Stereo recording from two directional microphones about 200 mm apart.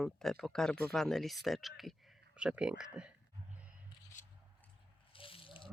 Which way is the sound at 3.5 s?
5° right (ahead or behind).